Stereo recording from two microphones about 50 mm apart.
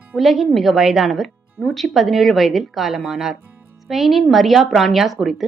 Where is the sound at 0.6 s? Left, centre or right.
Centre.